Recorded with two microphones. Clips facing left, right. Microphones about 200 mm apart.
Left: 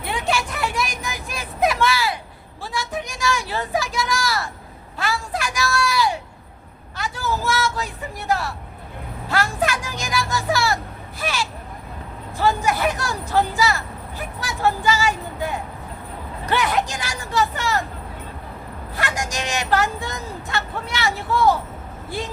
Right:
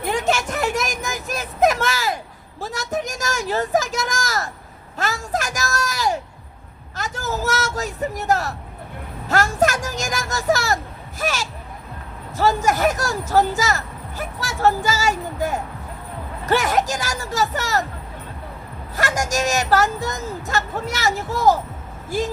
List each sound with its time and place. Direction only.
0.0 s vehicle: 45° right (ahead or behind)
2.6 s a sound: 45° right (ahead or behind)
4.9 s speech: 45° right (ahead or behind)
6.9 s vehicle: 45° right (ahead or behind)
9.3 s speech: 45° right (ahead or behind)
18.9 s speech: 45° right (ahead or behind)